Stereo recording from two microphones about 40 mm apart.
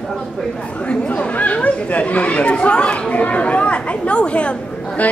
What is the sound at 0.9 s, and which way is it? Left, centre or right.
Chatter, left.